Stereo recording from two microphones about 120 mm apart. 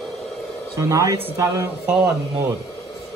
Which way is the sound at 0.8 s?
25° right (ahead or behind).